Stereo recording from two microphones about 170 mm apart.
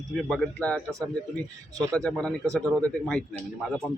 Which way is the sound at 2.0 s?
5° left (ahead or behind).